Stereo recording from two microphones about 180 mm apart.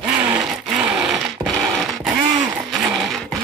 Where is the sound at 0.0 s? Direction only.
5° right (ahead or behind).